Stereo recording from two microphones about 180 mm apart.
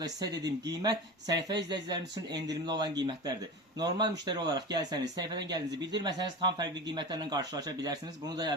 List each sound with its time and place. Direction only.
0.0 s speech: 20° right (ahead or behind)